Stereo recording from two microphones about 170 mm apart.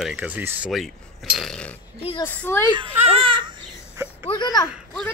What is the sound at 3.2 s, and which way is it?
Bird, 30° right (ahead or behind).